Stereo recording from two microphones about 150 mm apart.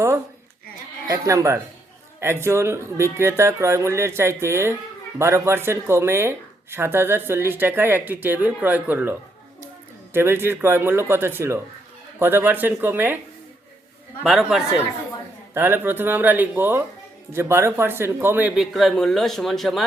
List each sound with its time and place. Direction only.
1.0 s speech: 20° right (ahead or behind)
14.3 s speech: centre (ahead or behind)
15.5 s speech: 15° right (ahead or behind); by 19.8 s centre (ahead or behind)